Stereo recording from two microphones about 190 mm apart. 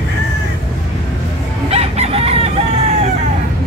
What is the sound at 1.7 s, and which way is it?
Chicken, 30° right (ahead or behind).